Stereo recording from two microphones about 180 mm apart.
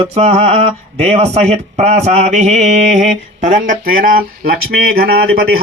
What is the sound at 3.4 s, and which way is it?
Speech, 50° right (ahead or behind).